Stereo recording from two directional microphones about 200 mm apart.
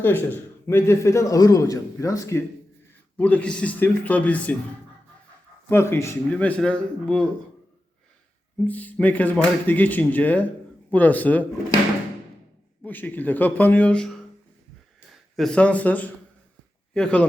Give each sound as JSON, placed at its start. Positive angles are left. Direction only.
{"t": 0.0, "sound": "speech", "side_deg": 10}
{"t": 5.6, "sound": "speech", "side_deg": 10}
{"t": 8.5, "sound": "speech", "side_deg": 10}
{"t": 12.8, "sound": "a man's voice", "side_deg": 10}